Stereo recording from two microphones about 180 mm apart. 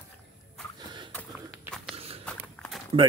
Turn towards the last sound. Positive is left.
turn(degrees=-30)  # may be behind; listen again after turning